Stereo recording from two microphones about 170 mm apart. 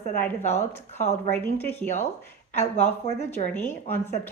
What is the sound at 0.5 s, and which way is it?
Speech, 40° left (ahead or behind).